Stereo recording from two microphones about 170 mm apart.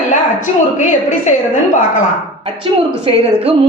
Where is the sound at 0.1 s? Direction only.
45° left (ahead or behind).